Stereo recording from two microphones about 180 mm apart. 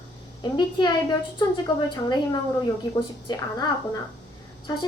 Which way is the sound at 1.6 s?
25° left (ahead or behind).